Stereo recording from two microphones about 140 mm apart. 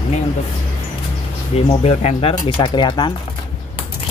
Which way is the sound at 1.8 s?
50° left (ahead or behind).